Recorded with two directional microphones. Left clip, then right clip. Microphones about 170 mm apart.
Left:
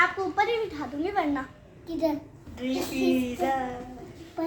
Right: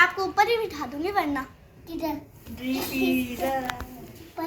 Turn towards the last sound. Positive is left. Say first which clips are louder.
# left 1 dB
turn(degrees=15)  # may be behind; listen again after turning